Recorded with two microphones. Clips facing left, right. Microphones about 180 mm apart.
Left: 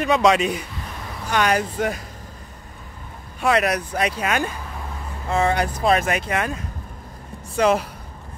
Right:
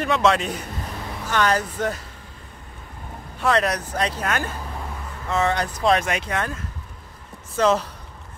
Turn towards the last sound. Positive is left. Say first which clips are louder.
# left 1 dB
turn(degrees=10)  # may be behind; listen again after turning